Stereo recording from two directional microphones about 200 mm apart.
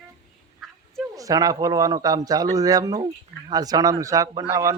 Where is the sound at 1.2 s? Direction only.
15° right (ahead or behind).